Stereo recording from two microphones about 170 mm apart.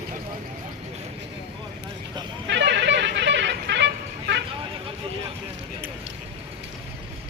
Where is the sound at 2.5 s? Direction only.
90° right.